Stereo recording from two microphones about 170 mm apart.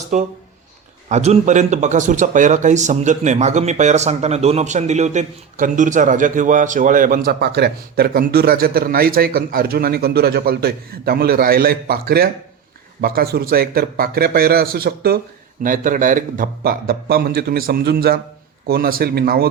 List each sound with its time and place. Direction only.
0.1 s a man's voice: 45° right (ahead or behind); by 15.2 s 65° right (ahead or behind)
15.6 s a man's voice: 50° right (ahead or behind)